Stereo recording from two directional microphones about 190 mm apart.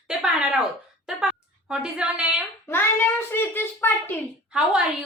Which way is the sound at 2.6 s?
10° left (ahead or behind).